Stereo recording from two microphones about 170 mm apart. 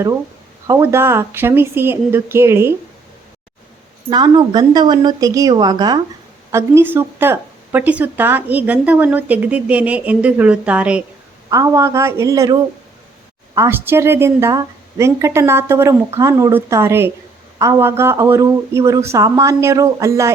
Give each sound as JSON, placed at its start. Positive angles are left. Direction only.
{"t": 0.7, "sound": "speech", "side_deg": -15}
{"t": 4.1, "sound": "a woman's voice", "side_deg": -25}
{"t": 11.5, "sound": "a woman's voice", "side_deg": -20}
{"t": 13.6, "sound": "speech", "side_deg": -15}